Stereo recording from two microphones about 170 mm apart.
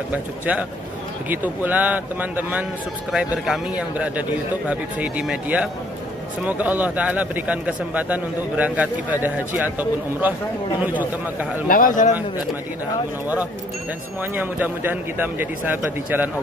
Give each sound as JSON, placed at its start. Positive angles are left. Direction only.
{"t": 0.1, "sound": "speech", "side_deg": -10}
{"t": 11.6, "sound": "a man's voice", "side_deg": 55}
{"t": 14.3, "sound": "speech", "side_deg": -10}